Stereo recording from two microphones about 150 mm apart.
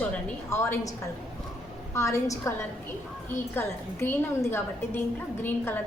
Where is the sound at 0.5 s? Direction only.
20° left (ahead or behind).